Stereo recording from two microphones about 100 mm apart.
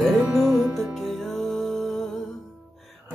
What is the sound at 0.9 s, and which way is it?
Music, centre (ahead or behind).